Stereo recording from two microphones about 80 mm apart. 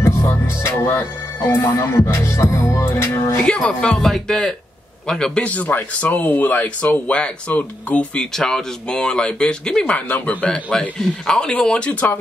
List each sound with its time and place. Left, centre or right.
0.0 s speech: left
3.4 s a man's voice: centre